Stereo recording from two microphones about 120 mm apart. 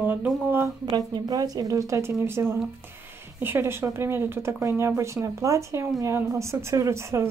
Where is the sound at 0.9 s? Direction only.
30° right (ahead or behind).